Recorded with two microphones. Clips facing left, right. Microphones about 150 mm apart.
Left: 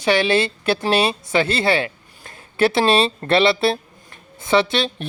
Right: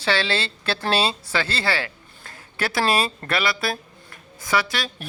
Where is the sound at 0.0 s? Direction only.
20° left (ahead or behind).